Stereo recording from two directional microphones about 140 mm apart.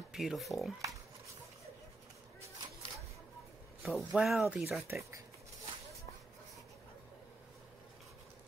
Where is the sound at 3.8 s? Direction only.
Centre (ahead or behind).